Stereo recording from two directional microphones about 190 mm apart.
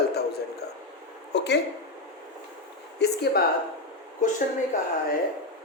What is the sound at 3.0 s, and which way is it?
Speech, 60° left (ahead or behind).